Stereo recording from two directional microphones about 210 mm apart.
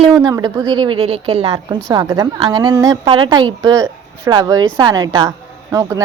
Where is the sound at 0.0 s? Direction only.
20° right (ahead or behind).